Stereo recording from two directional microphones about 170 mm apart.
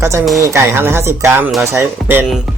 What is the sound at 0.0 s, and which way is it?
Speech, 15° right (ahead or behind).